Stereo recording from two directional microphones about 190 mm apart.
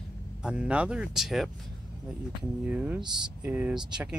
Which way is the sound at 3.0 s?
25° right (ahead or behind).